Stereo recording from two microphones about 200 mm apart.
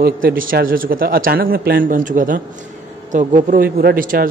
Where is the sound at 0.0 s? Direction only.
45° right (ahead or behind).